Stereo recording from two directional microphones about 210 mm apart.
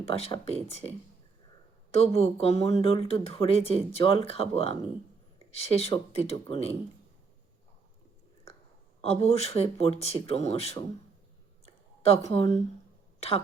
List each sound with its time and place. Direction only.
0.0 s speech: 25° left (ahead or behind)
9.0 s speech: 30° left (ahead or behind)
11.6 s a sound: 30° left (ahead or behind)
13.1 s speech: 30° left (ahead or behind)